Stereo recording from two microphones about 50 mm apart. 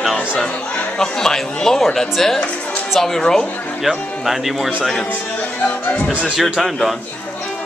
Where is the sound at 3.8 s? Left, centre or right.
Centre.